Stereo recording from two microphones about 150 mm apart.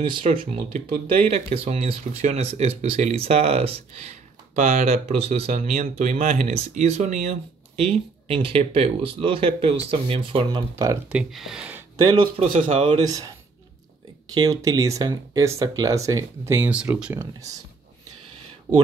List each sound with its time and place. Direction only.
0.0 s speech: 35° right (ahead or behind)
0.6 s speech: 55° right (ahead or behind)
1.1 s speech: 45° right (ahead or behind)
5.5 s speech: 50° right (ahead or behind)
6.3 s speech: 45° right (ahead or behind); by 11.0 s 30° right (ahead or behind)
11.1 s speech: 5° right (ahead or behind)
12.1 s speech: 40° right (ahead or behind)
13.0 s speech: 25° right (ahead or behind)
14.3 s speech: 25° right (ahead or behind)
18.7 s speech: 30° right (ahead or behind)